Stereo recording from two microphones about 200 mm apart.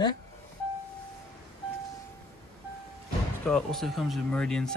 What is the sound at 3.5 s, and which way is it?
Speech, centre (ahead or behind).